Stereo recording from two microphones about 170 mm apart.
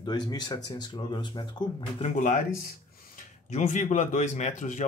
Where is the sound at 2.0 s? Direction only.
45° left (ahead or behind).